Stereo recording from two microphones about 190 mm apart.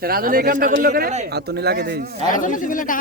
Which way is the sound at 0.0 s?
50° right (ahead or behind).